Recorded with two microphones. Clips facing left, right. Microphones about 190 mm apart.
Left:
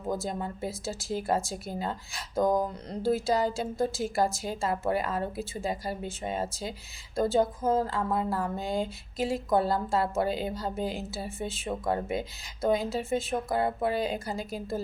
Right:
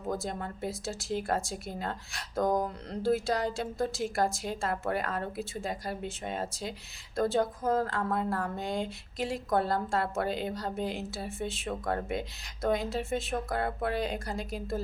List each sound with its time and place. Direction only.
0.1 s a woman's voice: centre (ahead or behind)